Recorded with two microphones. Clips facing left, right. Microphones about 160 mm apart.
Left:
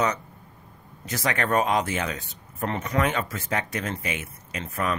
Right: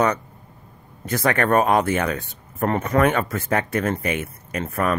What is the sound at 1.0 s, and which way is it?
Speech, 55° right (ahead or behind).